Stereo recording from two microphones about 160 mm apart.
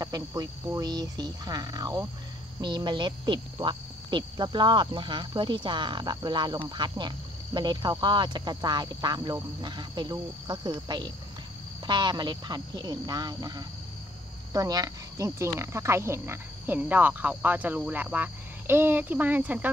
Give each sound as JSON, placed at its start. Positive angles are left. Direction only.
{"t": 0.0, "sound": "speech", "side_deg": -25}